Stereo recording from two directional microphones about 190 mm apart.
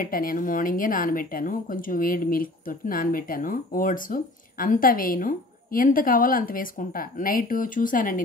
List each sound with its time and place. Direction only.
0.0 s speech: 50° left (ahead or behind)